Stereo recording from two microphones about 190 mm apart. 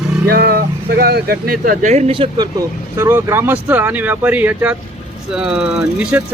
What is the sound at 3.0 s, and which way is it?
Speech, 10° right (ahead or behind).